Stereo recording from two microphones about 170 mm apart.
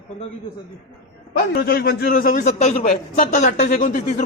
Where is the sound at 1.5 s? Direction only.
65° left (ahead or behind).